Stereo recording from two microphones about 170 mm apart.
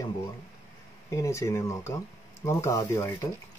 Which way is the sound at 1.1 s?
15° left (ahead or behind).